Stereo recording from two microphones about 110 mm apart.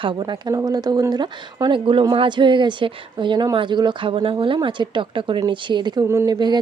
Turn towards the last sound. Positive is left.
turn(degrees=-40)  # may be behind; listen again after turning